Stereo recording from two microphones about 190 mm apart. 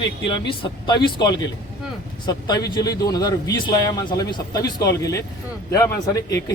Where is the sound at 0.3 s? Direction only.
25° left (ahead or behind).